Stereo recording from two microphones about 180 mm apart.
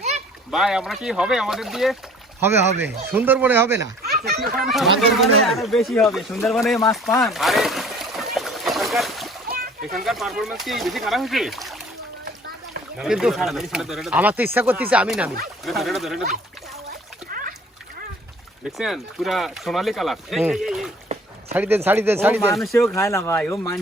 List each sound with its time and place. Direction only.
0.5 s speech: 5° right (ahead or behind)
2.4 s speech: 15° right (ahead or behind)
4.0 s a sound: 60° right (ahead or behind)
4.5 s speech: centre (ahead or behind)
7.2 s a sound: centre (ahead or behind)
9.9 s speech: centre (ahead or behind)
13.0 s speech: 5° right (ahead or behind)
18.8 s speech: centre (ahead or behind)
22.7 s speech: 15° left (ahead or behind)